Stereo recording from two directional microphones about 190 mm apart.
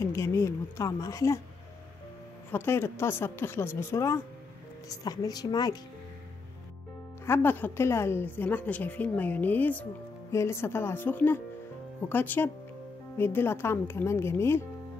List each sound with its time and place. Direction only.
0.0 s a woman's voice: 15° left (ahead or behind)
2.5 s a woman's voice: 10° left (ahead or behind)
7.2 s a woman's voice: 10° left (ahead or behind)